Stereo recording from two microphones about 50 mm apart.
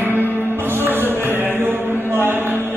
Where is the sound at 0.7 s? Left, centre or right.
Right.